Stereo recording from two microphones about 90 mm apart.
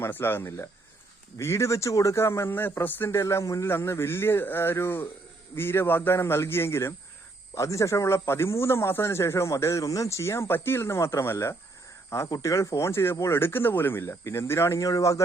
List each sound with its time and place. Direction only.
0.0 s speech: 25° left (ahead or behind)